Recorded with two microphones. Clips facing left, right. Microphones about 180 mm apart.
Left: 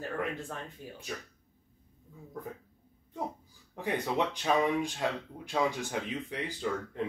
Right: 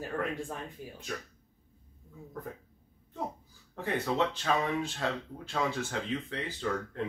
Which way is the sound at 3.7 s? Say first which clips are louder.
Even; 15° left (ahead or behind).